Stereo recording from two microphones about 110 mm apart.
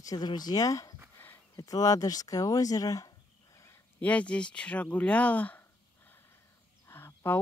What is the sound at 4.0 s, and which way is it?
Speech, 15° left (ahead or behind).